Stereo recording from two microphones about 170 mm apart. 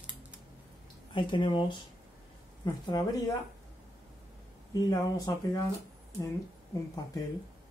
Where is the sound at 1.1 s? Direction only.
30° left (ahead or behind).